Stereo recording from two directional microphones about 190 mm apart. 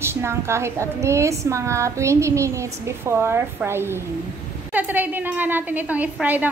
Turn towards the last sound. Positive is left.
turn(degrees=-10)  # may be behind; listen again after turning